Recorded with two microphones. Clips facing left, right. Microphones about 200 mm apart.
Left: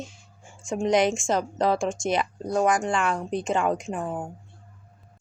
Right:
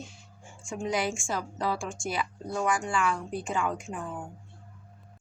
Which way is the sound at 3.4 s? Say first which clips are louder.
Left 6 dB; 75° left (ahead or behind).